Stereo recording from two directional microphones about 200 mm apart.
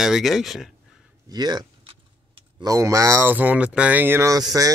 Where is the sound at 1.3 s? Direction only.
20° right (ahead or behind).